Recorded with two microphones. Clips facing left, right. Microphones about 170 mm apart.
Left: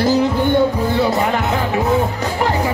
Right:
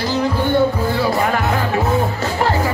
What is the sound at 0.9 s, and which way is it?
Speech, 20° left (ahead or behind).